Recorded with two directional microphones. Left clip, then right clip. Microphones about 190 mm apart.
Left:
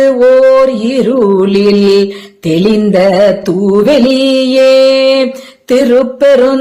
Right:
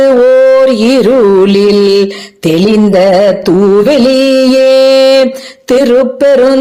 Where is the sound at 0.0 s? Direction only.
35° right (ahead or behind).